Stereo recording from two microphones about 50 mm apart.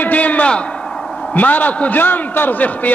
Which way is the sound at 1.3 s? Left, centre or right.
Left.